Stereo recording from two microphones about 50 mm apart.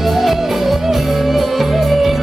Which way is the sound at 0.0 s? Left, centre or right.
Centre.